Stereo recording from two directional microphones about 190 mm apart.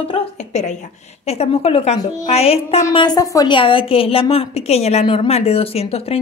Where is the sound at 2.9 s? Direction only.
20° left (ahead or behind).